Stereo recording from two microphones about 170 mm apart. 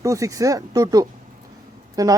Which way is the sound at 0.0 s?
20° right (ahead or behind).